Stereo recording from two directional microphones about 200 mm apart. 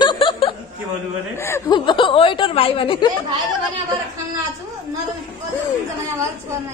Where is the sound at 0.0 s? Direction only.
25° left (ahead or behind).